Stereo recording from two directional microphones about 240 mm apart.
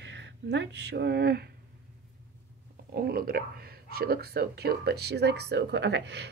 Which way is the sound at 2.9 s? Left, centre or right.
Right.